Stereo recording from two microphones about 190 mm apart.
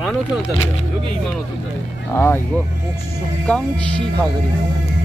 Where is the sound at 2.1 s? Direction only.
15° left (ahead or behind).